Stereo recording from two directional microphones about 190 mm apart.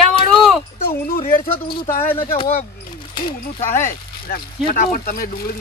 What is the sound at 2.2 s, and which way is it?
Speech, 25° left (ahead or behind).